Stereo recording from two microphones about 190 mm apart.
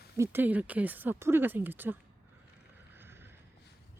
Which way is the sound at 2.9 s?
10° right (ahead or behind).